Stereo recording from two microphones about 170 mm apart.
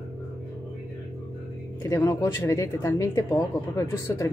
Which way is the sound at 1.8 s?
20° left (ahead or behind).